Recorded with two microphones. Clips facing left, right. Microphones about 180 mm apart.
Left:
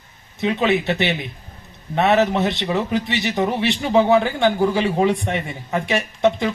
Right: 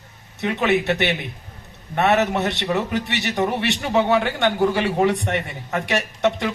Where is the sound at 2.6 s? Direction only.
20° left (ahead or behind).